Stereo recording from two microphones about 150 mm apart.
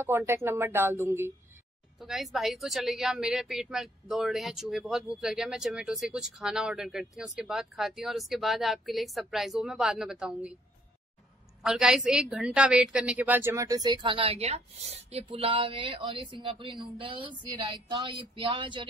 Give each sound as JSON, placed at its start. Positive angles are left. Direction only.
{"t": 0.0, "sound": "a woman's voice", "side_deg": -15}
{"t": 2.0, "sound": "a woman's voice", "side_deg": 0}
{"t": 11.6, "sound": "a woman's voice", "side_deg": -5}